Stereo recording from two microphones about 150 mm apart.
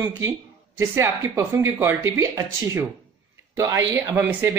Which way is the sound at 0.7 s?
15° right (ahead or behind).